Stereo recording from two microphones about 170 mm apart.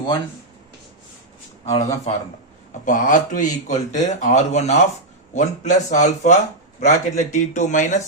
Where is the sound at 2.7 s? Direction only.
50° left (ahead or behind).